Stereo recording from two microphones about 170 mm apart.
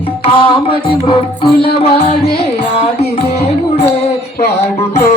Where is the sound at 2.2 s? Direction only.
65° left (ahead or behind).